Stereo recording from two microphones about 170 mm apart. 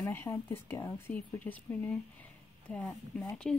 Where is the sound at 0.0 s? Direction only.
15° left (ahead or behind).